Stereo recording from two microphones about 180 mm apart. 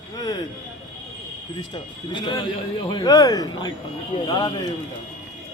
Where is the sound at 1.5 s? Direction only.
25° left (ahead or behind).